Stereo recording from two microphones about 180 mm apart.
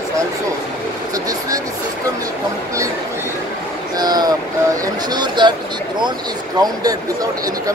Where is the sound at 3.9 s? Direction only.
20° right (ahead or behind).